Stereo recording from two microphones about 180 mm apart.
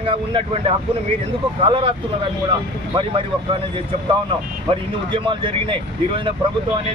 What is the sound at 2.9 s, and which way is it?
Speech, 30° right (ahead or behind).